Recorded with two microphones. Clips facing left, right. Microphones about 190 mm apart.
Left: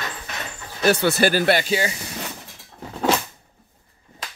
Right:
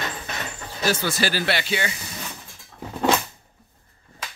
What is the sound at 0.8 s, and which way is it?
Speech, 65° left (ahead or behind).